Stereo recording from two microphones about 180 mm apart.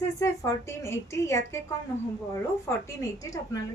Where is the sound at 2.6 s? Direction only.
15° left (ahead or behind).